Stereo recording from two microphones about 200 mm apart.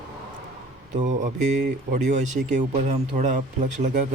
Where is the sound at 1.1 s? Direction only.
35° right (ahead or behind).